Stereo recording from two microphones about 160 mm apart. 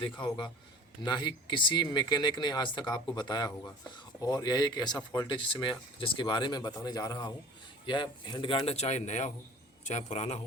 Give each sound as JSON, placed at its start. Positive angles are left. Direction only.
{"t": 0.0, "sound": "a man's voice", "side_deg": 30}